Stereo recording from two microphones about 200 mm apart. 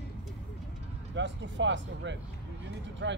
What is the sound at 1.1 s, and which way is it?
Speech, 65° right (ahead or behind).